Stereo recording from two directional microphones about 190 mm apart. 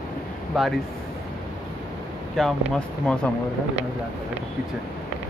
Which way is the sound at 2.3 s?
Centre (ahead or behind).